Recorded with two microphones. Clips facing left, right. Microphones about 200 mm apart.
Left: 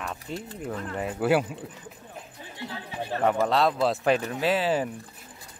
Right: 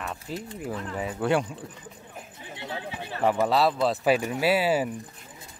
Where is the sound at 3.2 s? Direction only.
5° right (ahead or behind).